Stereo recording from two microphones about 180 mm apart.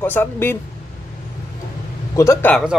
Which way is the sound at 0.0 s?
10° left (ahead or behind).